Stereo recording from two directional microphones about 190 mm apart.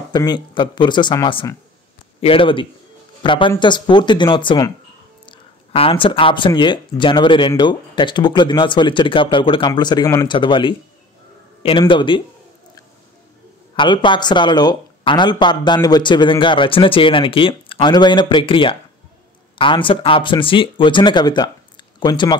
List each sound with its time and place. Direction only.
0.1 s speech: 20° left (ahead or behind)
13.7 s speech: 25° left (ahead or behind)